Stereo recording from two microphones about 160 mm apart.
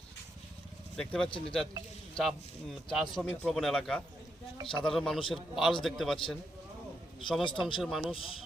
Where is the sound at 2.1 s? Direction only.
Centre (ahead or behind).